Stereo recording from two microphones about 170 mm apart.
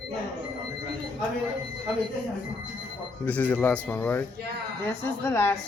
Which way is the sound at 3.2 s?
10° left (ahead or behind).